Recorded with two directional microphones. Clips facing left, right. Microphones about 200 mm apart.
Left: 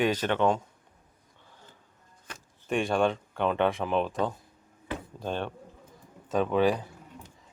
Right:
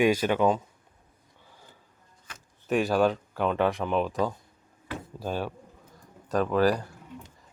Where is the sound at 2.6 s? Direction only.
Centre (ahead or behind).